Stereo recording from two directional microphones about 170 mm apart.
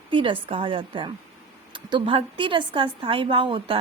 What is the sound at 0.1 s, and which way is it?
A woman's voice, 30° right (ahead or behind).